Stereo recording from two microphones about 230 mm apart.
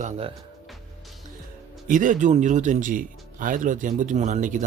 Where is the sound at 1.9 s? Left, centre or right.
Right.